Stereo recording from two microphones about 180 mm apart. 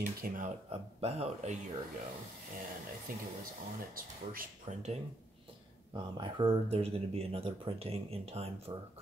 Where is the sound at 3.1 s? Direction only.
50° right (ahead or behind).